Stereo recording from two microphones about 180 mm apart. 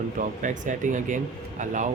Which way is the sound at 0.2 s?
45° right (ahead or behind).